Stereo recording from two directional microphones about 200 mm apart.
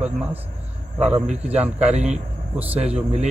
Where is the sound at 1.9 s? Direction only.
35° right (ahead or behind).